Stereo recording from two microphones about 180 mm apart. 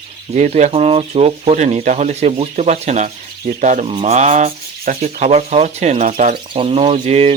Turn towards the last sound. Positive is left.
turn(degrees=-35)  # may be behind; listen again after turning